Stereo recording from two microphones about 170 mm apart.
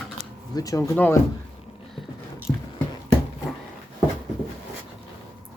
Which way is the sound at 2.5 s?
15° left (ahead or behind).